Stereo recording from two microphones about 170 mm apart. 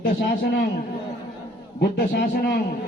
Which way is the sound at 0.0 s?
65° left (ahead or behind).